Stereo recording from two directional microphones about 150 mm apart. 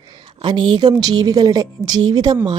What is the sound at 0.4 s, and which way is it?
Speech, 30° right (ahead or behind).